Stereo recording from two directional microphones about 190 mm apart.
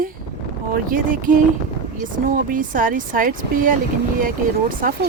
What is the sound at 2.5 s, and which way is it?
Speech, 45° right (ahead or behind).